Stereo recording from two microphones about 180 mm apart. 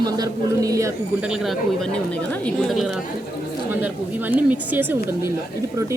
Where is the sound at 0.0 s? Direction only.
20° right (ahead or behind).